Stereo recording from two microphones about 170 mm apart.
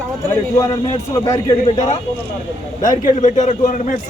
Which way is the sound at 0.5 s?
20° left (ahead or behind).